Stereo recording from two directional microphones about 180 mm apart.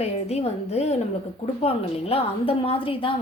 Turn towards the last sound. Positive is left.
turn(degrees=30)  # may be behind; listen again after turning